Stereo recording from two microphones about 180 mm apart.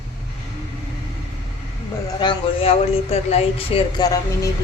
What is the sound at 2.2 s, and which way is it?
Speech, 30° left (ahead or behind).